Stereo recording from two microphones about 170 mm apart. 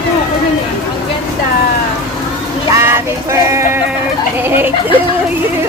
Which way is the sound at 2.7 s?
15° right (ahead or behind).